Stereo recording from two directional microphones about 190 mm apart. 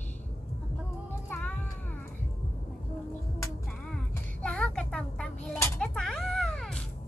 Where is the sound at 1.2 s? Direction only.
10° left (ahead or behind).